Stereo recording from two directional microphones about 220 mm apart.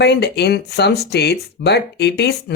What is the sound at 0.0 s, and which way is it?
Speech, 50° left (ahead or behind).